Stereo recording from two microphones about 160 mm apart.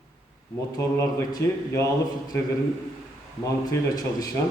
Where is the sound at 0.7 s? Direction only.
20° left (ahead or behind).